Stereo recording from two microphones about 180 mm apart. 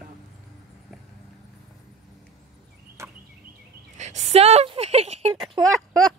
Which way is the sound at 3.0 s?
15° right (ahead or behind).